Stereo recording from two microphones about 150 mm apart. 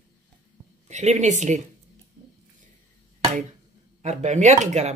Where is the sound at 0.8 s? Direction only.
50° right (ahead or behind).